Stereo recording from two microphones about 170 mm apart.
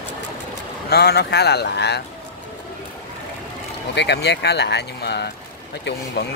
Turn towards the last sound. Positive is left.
turn(degrees=90)